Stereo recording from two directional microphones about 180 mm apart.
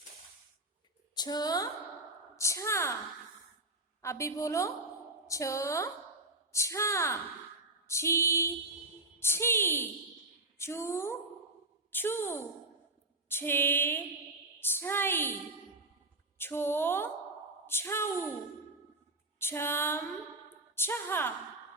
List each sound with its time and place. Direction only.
1.1 s a woman's voice: 20° left (ahead or behind)
4.0 s a woman's voice: 15° left (ahead or behind)
16.4 s a woman's voice: 10° left (ahead or behind)
19.4 s a woman's voice: 15° left (ahead or behind)